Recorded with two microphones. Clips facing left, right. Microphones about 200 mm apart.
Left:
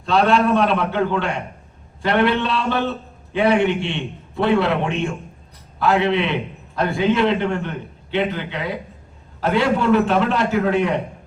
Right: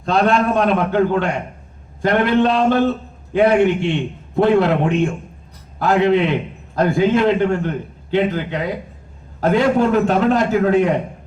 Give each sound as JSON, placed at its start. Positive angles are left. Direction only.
{"t": 0.0, "sound": "a man's voice", "side_deg": -45}